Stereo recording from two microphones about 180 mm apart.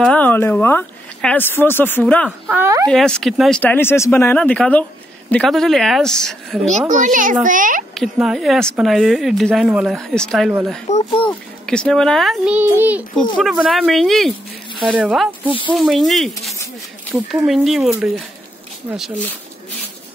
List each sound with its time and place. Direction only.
0.0 s speech: 5° left (ahead or behind)
2.4 s speech: 15° right (ahead or behind)
2.9 s speech: centre (ahead or behind)
6.9 s a child's voice: 45° right (ahead or behind)
7.9 s speech: centre (ahead or behind)
10.9 s speech: 40° left (ahead or behind)
11.6 s speech: 5° left (ahead or behind)